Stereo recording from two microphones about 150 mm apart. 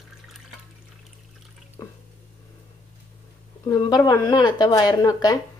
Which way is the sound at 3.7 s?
25° left (ahead or behind).